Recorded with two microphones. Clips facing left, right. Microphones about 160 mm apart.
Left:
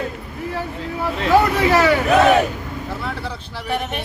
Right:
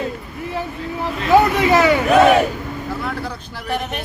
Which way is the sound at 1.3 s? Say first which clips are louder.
Right 2 dB; 15° right (ahead or behind).